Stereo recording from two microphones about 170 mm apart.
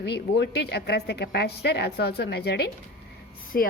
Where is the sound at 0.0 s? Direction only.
85° left.